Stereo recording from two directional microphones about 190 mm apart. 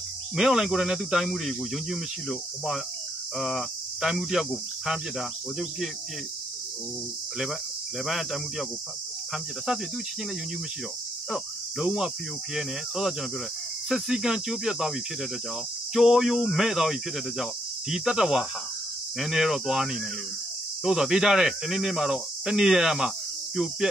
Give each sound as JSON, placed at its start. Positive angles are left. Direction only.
{"t": 0.4, "sound": "speech", "side_deg": 0}
{"t": 8.0, "sound": "speech", "side_deg": 0}
{"t": 11.2, "sound": "cricket", "side_deg": 0}
{"t": 12.5, "sound": "speech", "side_deg": 0}